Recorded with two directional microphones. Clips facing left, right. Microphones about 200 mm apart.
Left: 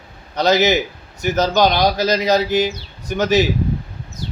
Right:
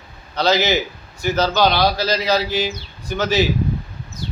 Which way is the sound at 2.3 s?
45° left (ahead or behind).